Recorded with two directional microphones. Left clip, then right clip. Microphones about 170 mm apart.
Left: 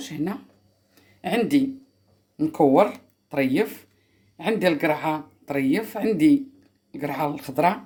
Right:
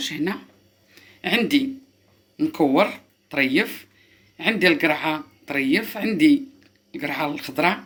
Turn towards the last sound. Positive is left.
turn(degrees=50)  # may be behind; listen again after turning